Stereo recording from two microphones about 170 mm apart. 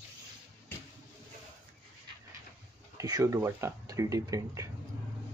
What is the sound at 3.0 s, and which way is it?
Speech, 20° right (ahead or behind).